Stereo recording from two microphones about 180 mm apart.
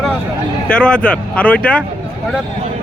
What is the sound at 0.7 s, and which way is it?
Speech, 5° left (ahead or behind).